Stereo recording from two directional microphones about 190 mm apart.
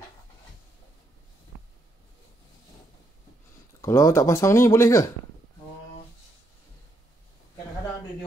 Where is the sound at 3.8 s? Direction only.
15° left (ahead or behind).